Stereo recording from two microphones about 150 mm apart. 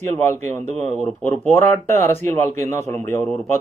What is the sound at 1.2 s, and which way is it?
Speech, 15° left (ahead or behind).